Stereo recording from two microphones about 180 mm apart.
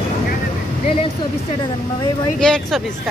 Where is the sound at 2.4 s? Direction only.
5° left (ahead or behind).